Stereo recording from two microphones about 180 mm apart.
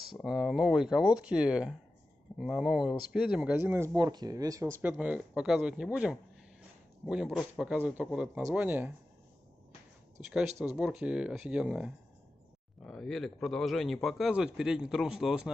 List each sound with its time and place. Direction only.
0.2 s a man's voice: 5° right (ahead or behind)
10.6 s a man's voice: 5° right (ahead or behind)